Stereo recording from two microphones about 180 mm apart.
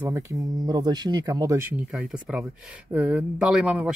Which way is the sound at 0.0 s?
15° right (ahead or behind).